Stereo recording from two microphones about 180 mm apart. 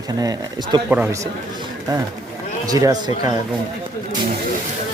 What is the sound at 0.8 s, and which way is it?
Speech, 10° right (ahead or behind).